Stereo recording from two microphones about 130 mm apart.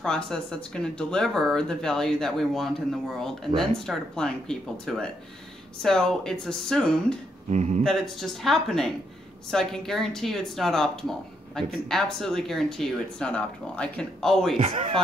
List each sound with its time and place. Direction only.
0.0 s speech: 5° left (ahead or behind)
7.4 s speech: 60° right (ahead or behind)
7.8 s speech: 5° left (ahead or behind)
14.6 s speech: 50° right (ahead or behind)